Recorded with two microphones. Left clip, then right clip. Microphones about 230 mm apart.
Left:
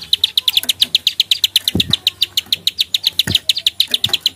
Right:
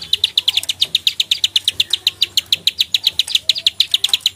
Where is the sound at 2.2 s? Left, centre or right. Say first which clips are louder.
Right 1 dB; centre.